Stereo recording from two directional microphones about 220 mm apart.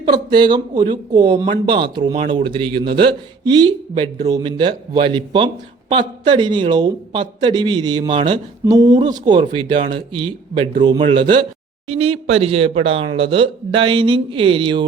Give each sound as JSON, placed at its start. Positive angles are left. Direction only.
{"t": 0.0, "sound": "a man's voice", "side_deg": -20}